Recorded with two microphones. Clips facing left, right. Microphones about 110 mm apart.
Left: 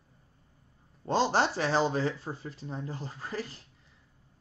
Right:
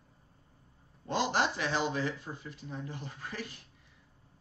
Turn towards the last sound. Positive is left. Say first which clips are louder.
# left 5 dB
turn(degrees=35)  # may be behind; listen again after turning